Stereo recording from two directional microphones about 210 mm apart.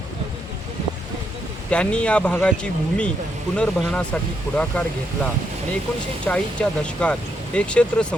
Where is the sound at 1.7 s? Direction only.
5° left (ahead or behind).